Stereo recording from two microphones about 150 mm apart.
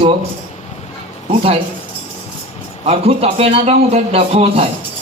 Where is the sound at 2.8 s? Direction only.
40° right (ahead or behind).